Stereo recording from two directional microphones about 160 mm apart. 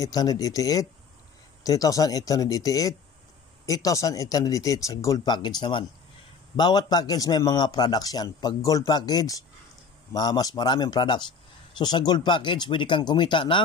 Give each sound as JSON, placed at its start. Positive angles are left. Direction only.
{"t": 0.0, "sound": "a man's voice", "side_deg": 25}